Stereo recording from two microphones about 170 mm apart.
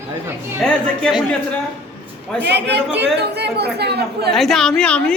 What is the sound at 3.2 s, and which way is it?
A woman's voice, 75° right (ahead or behind).